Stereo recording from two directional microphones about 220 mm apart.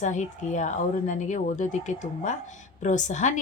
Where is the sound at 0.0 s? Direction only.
35° left (ahead or behind).